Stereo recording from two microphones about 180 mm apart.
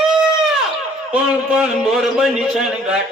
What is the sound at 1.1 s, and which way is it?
A man's voice, 5° right (ahead or behind).